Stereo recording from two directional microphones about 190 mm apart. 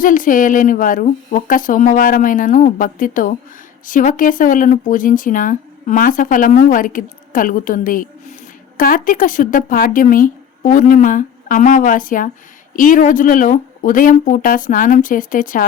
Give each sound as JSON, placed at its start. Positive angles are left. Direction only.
{"t": 0.0, "sound": "speech", "side_deg": 45}